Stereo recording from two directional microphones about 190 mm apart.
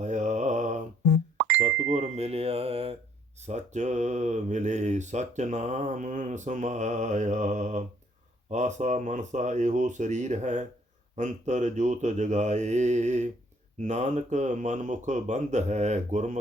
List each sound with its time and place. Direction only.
0.0 s mantra: 40° right (ahead or behind)
1.4 s plop: 10° right (ahead or behind)
1.9 s speech: 35° right (ahead or behind)